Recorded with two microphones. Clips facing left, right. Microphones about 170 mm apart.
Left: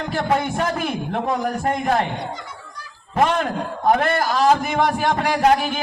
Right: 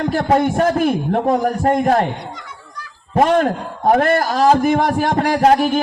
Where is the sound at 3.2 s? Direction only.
45° right (ahead or behind).